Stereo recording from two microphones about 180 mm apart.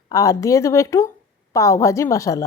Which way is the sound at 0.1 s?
20° left (ahead or behind).